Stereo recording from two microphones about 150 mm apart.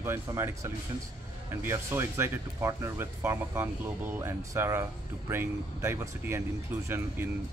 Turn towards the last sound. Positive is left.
turn(degrees=-15)  # may be behind; listen again after turning